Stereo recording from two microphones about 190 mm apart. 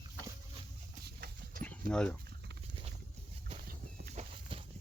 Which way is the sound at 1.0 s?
50° right (ahead or behind).